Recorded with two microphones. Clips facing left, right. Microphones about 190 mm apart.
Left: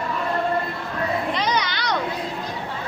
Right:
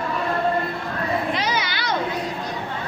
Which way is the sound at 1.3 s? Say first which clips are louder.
Left 1 dB; 5° right (ahead or behind).